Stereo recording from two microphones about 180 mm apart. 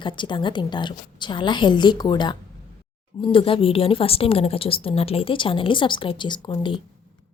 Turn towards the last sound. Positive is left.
turn(degrees=25)  # may be behind; listen again after turning